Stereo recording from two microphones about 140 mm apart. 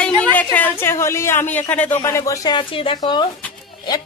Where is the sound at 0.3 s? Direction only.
10° left (ahead or behind).